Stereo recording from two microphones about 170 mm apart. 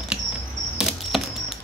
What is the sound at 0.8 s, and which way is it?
Camera, centre (ahead or behind).